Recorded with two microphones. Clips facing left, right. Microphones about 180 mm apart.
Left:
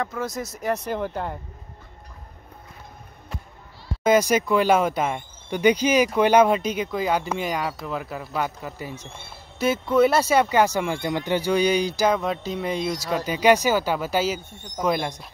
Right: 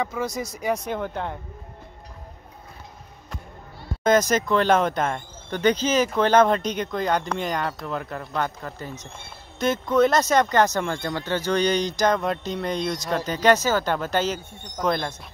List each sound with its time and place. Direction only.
0.0 s speech: centre (ahead or behind)
4.0 s speech: 10° left (ahead or behind)